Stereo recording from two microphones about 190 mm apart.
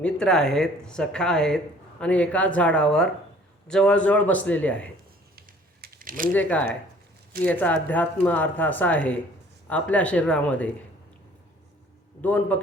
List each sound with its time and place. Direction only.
0.0 s speech: 5° left (ahead or behind)
5.4 s a sound: 50° right (ahead or behind)
6.3 s speech: 10° left (ahead or behind)
12.2 s speech: 10° left (ahead or behind)